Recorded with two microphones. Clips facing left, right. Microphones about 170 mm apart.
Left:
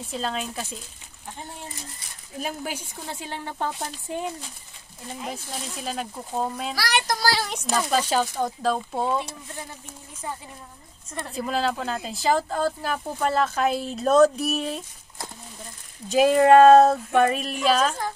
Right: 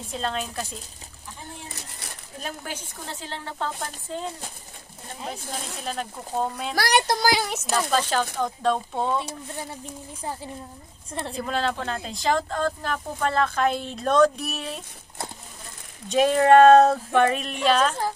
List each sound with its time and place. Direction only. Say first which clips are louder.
0.1 s speech: even; centre (ahead or behind)
2.4 s speech: left 3 dB; 10° left (ahead or behind)
5.2 s speech: right 1 dB; 5° left (ahead or behind)
6.7 s speech: right 4 dB; 50° right (ahead or behind)
7.1 s speech: right 2 dB; 20° right (ahead or behind)
7.7 s speech: left 1 dB; 5° left (ahead or behind)
10.2 s a woman's voice: right 2 dB; 30° right (ahead or behind)
11.3 s speech: left 2 dB; 5° left (ahead or behind)
16.1 s speech: left 1 dB; 5° left (ahead or behind)